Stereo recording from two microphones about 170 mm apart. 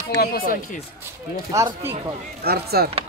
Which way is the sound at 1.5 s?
15° right (ahead or behind).